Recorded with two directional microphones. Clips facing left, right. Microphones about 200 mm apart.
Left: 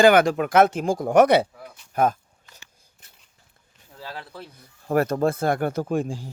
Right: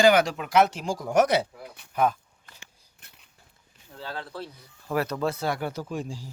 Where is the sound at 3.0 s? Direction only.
60° right (ahead or behind).